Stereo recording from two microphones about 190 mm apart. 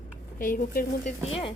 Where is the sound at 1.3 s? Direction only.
30° left (ahead or behind).